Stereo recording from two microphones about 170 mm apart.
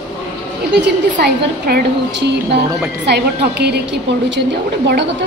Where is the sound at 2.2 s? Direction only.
85° right.